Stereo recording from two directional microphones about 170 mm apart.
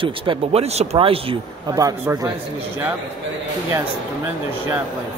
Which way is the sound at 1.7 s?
20° right (ahead or behind).